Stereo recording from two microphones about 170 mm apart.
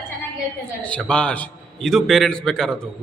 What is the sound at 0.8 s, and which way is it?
A man's voice, 5° left (ahead or behind).